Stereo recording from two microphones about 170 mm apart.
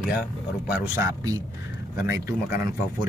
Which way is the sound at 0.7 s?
15° right (ahead or behind).